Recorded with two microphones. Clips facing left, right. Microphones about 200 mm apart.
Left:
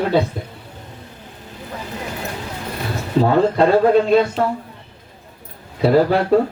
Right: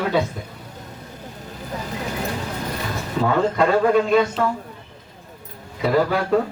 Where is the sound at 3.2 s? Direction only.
35° left (ahead or behind).